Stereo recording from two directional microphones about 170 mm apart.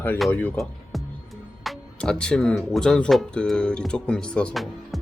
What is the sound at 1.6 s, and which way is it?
Speech, 5° left (ahead or behind).